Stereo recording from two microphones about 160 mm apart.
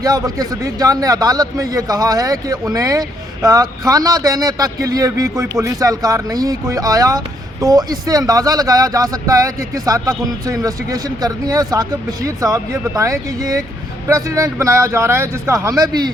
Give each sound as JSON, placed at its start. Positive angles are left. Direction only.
{"t": 0.0, "sound": "a man's voice", "side_deg": -25}